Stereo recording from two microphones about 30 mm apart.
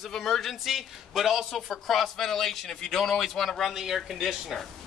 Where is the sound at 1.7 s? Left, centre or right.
Centre.